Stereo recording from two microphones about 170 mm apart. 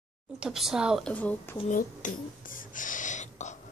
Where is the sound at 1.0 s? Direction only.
10° left (ahead or behind).